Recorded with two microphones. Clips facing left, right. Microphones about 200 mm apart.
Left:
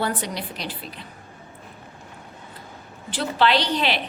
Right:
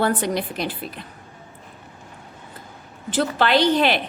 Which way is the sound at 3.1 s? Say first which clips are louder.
Right 2 dB; 50° right (ahead or behind).